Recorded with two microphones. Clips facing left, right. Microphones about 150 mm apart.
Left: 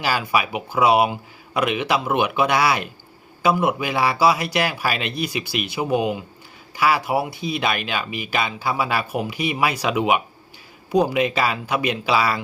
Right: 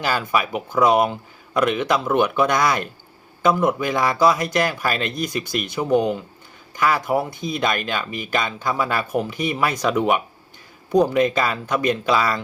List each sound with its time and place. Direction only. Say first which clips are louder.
0.0 s speech: even; 10° left (ahead or behind)